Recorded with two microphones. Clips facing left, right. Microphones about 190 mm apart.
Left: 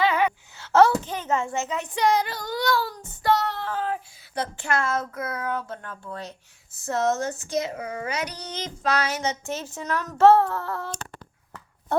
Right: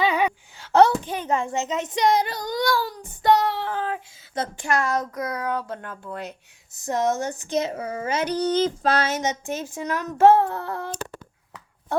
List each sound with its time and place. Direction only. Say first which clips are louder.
0.0 s a child's voice: even; 15° right (ahead or behind)